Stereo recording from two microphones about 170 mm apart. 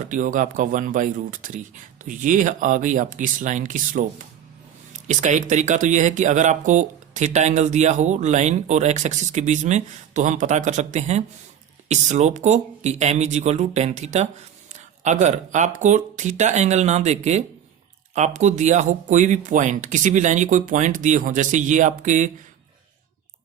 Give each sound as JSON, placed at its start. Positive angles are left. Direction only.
{"t": 0.1, "sound": "speech", "side_deg": -50}